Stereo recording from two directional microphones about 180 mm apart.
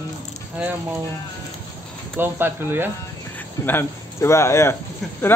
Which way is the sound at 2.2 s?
10° right (ahead or behind).